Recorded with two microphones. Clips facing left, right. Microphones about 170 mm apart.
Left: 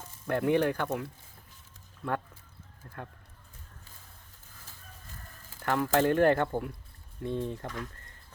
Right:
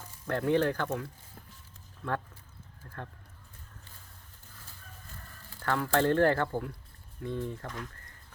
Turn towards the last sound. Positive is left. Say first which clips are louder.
# left 2 dB
turn(degrees=20)  # may be behind; listen again after turning